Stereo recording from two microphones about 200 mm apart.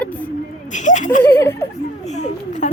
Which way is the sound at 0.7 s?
40° left (ahead or behind).